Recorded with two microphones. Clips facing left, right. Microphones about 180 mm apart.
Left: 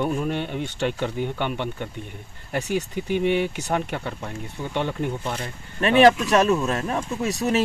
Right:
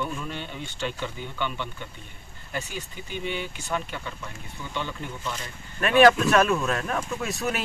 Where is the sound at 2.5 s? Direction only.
70° left (ahead or behind).